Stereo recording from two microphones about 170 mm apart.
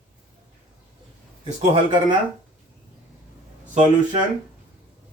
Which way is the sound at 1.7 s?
30° right (ahead or behind).